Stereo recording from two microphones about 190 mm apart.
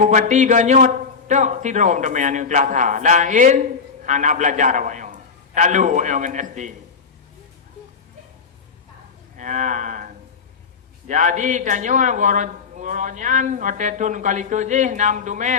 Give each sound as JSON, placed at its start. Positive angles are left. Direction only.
{"t": 0.0, "sound": "a man's voice", "side_deg": -40}
{"t": 9.4, "sound": "speech", "side_deg": -40}
{"t": 11.1, "sound": "speech", "side_deg": -40}